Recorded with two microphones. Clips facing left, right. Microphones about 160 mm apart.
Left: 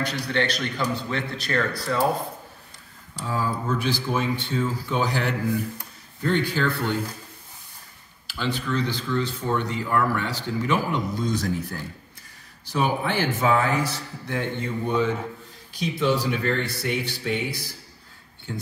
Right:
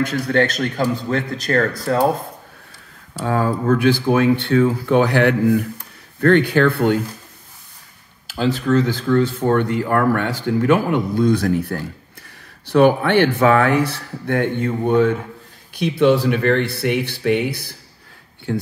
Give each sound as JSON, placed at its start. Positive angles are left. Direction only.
{"t": 0.0, "sound": "speech", "side_deg": -45}
{"t": 3.3, "sound": "a man's voice", "side_deg": -65}
{"t": 8.3, "sound": "a man's voice", "side_deg": -45}